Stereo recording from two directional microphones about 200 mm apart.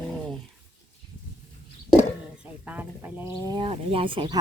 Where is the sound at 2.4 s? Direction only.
5° right (ahead or behind).